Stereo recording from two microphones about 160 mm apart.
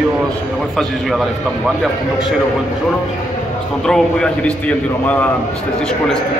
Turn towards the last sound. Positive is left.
turn(degrees=5)  # may be behind; listen again after turning